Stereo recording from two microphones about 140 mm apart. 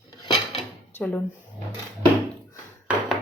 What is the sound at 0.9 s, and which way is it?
Drawer open or close, 15° left (ahead or behind).